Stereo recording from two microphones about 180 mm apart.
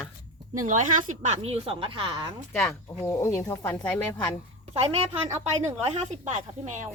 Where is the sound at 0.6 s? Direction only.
45° right (ahead or behind); by 2.3 s 25° right (ahead or behind).